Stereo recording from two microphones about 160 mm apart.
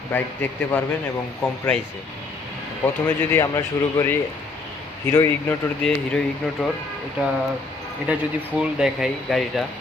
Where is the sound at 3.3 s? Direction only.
20° left (ahead or behind).